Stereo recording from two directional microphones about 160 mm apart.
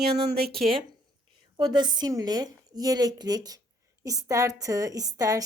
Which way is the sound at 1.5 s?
25° right (ahead or behind).